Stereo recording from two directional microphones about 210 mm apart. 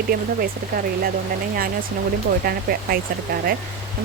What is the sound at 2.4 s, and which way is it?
Speech, 45° right (ahead or behind).